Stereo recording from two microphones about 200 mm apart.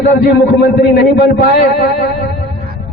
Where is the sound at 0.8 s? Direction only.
55° left (ahead or behind).